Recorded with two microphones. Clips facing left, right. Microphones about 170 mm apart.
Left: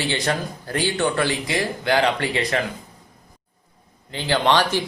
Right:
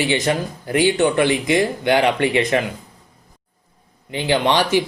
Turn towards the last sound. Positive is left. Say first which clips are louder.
# right 2 dB
turn(degrees=-15)  # may be behind; listen again after turning